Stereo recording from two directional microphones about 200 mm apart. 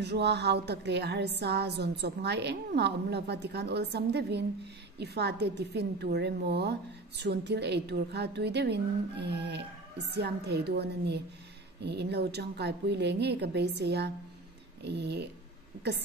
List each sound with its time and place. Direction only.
0.0 s a woman's voice: 55° right (ahead or behind)